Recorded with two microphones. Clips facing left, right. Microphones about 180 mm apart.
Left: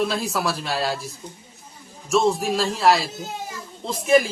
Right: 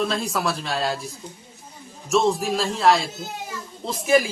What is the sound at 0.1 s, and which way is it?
A man's voice, centre (ahead or behind).